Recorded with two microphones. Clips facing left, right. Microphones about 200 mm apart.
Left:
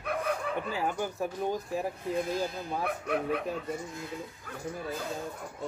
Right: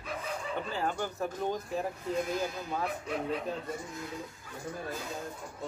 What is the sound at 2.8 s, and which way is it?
Speech, 60° left (ahead or behind).